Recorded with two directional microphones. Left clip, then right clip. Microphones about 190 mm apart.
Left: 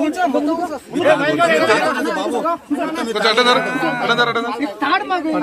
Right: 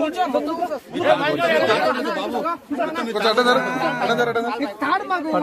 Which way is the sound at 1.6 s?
20° right (ahead or behind).